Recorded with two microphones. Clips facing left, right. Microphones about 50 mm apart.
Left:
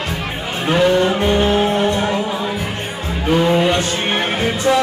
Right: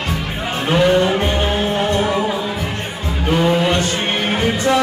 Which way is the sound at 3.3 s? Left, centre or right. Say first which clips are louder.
Left 1 dB; centre.